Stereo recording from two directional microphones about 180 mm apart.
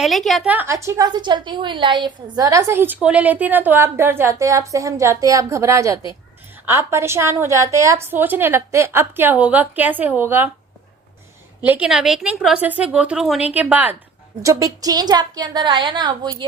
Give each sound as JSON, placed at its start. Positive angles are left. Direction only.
{"t": 0.0, "sound": "a woman's voice", "side_deg": 0}
{"t": 11.6, "sound": "a woman's voice", "side_deg": -10}